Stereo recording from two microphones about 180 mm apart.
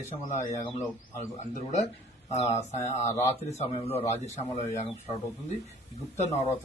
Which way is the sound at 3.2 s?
35° left (ahead or behind).